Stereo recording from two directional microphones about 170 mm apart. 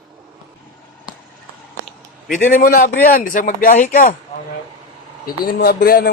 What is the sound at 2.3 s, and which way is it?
A man's voice, 55° left (ahead or behind).